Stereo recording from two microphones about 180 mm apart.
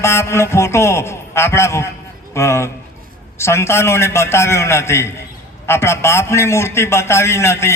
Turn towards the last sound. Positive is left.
turn(degrees=15)  # may be behind; listen again after turning